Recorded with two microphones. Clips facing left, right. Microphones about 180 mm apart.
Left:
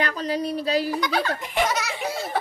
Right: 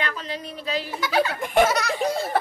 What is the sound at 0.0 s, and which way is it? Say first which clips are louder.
Speech: left 6 dB; 40° left (ahead or behind).